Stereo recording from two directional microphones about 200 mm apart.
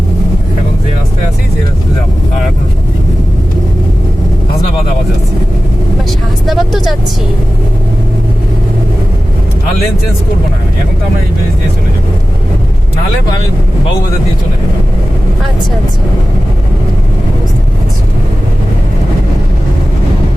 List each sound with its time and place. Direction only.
6.1 s speech: centre (ahead or behind)